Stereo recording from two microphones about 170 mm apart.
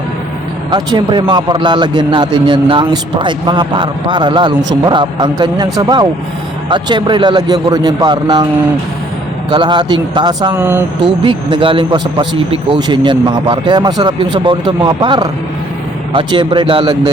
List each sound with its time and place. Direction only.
0.7 s a man's voice: 25° right (ahead or behind)
9.5 s a man's voice: 25° right (ahead or behind)
10.5 s speech: 15° right (ahead or behind)
11.2 s a man's voice: 30° right (ahead or behind)